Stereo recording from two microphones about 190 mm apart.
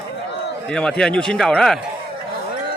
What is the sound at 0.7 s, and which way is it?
A man's voice, 5° left (ahead or behind).